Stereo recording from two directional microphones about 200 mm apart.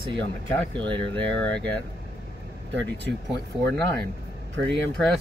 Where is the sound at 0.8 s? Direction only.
5° left (ahead or behind).